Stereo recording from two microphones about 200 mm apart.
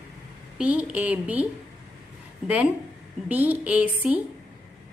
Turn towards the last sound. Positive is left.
turn(degrees=-5)  # may be behind; listen again after turning